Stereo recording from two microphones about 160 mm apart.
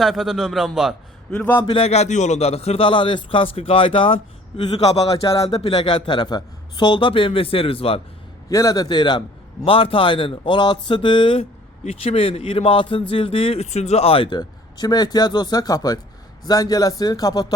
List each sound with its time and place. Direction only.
0.0 s a man's voice: centre (ahead or behind)
1.6 s speech: 35° left (ahead or behind)
8.4 s speech: 20° left (ahead or behind)